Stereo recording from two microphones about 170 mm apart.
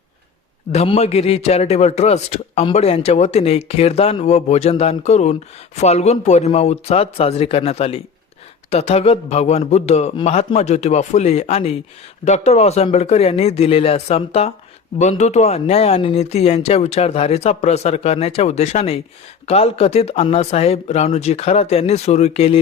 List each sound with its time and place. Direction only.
0.7 s a man's voice: 40° left (ahead or behind)